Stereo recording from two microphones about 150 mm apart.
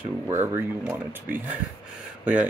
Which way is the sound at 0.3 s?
15° right (ahead or behind).